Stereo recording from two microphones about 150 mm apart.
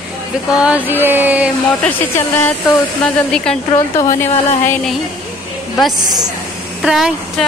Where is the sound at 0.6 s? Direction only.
10° right (ahead or behind).